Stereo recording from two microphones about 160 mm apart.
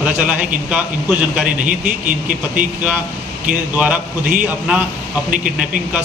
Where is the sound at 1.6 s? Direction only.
55° right (ahead or behind).